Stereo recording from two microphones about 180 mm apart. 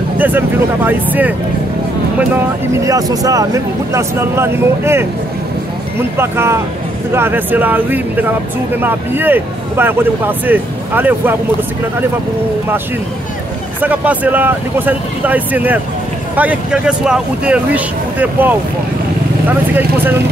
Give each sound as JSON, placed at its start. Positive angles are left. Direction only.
{"t": 0.2, "sound": "speech", "side_deg": -10}
{"t": 13.7, "sound": "speech", "side_deg": -10}
{"t": 19.7, "sound": "speech", "side_deg": -10}